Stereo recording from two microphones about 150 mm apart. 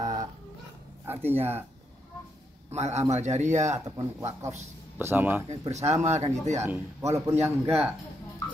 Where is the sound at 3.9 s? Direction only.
20° right (ahead or behind).